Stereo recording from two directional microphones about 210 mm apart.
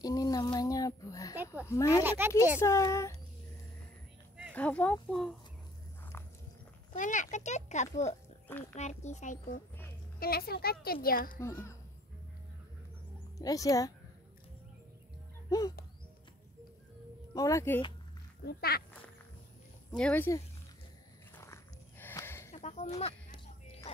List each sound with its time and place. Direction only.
0.0 s speech: 15° left (ahead or behind)
2.0 s speech: 10° right (ahead or behind)
2.6 s speech: 15° left (ahead or behind)
4.6 s speech: 5° left (ahead or behind)
6.9 s a child's voice: 35° left (ahead or behind)
11.4 s speech: 15° left (ahead or behind)
13.4 s speech: 15° left (ahead or behind)
17.3 s speech: 15° left (ahead or behind)
18.4 s a woman's voice: 45° left (ahead or behind)
20.0 s speech: 10° left (ahead or behind)
21.4 s a sound: 10° left (ahead or behind)
22.5 s a sound: 35° left (ahead or behind)